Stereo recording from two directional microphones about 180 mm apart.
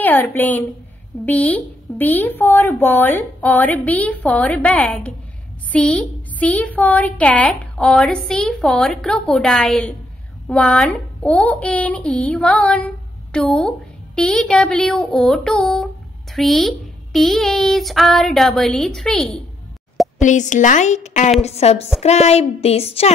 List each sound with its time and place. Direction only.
0.0 s a child's voice: 10° left (ahead or behind)
20.2 s a woman's voice: 45° left (ahead or behind)